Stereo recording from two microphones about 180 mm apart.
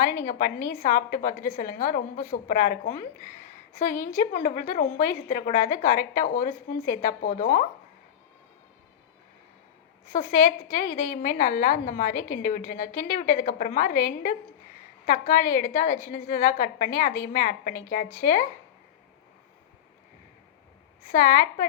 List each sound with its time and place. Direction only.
0.3 s a woman's voice: 50° left (ahead or behind)
10.1 s a woman's voice: 45° left (ahead or behind)
21.1 s a woman's voice: 55° left (ahead or behind)